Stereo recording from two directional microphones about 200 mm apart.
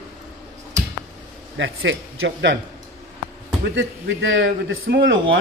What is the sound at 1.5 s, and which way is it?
A man's voice, 70° right (ahead or behind).